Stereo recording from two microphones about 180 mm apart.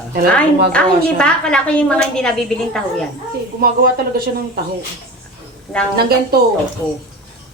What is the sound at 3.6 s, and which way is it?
Speech, 60° right (ahead or behind).